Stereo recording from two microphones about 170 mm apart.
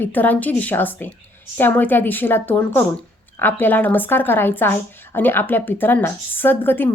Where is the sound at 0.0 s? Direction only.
10° left (ahead or behind).